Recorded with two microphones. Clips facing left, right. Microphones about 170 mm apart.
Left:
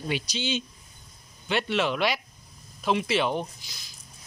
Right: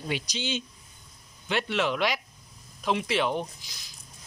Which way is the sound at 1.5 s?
10° left (ahead or behind).